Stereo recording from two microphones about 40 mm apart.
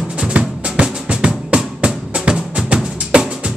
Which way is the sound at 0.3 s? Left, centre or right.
Right.